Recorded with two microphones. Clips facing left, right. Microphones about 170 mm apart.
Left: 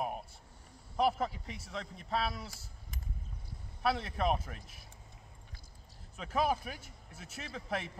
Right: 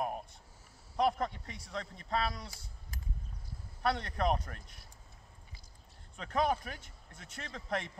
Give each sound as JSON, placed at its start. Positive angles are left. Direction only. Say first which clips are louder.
{"t": 0.9, "sound": "a man's voice", "louder": "even", "side_deg": 5}
{"t": 6.1, "sound": "speech", "louder": "even", "side_deg": 5}